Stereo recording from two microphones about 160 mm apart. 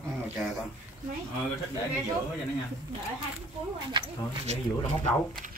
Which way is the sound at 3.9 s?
30° right (ahead or behind).